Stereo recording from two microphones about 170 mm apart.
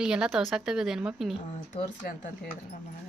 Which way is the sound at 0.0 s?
5° right (ahead or behind).